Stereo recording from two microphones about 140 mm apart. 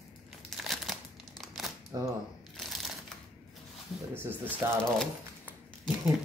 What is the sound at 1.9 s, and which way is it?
Speech, 25° right (ahead or behind).